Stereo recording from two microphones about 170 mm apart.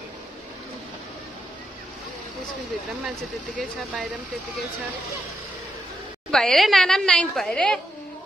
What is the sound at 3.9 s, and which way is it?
Speech, 5° right (ahead or behind).